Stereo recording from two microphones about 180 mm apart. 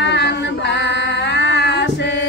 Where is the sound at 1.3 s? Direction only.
75° left (ahead or behind).